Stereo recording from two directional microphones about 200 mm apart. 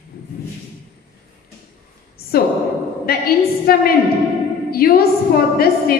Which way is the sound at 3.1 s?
50° left (ahead or behind).